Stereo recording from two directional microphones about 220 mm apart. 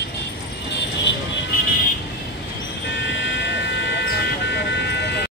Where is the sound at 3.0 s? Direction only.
55° left (ahead or behind).